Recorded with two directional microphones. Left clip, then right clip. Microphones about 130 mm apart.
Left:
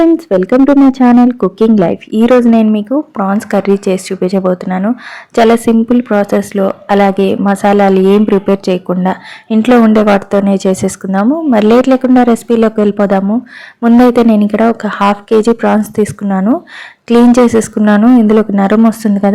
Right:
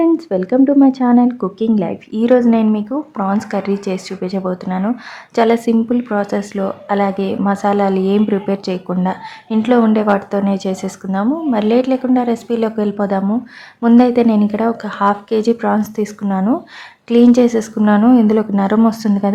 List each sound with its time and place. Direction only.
0.0 s a woman's voice: 35° left (ahead or behind)
1.5 s a woman's voice: 40° left (ahead or behind)